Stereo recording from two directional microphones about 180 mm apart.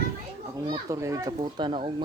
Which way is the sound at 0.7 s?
15° right (ahead or behind).